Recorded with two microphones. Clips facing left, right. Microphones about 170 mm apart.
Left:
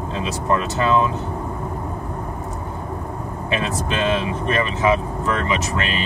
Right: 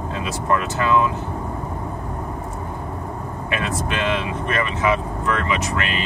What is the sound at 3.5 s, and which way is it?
Speech, 30° left (ahead or behind).